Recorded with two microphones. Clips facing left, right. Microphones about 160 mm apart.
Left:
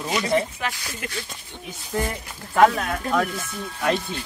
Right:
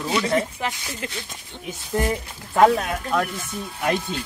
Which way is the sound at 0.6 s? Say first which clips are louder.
Right 2 dB; 25° right (ahead or behind).